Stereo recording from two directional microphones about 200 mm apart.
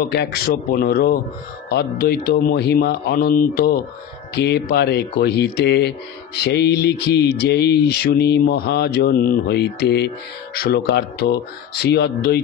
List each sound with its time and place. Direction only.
0.0 s speech: 55° left (ahead or behind)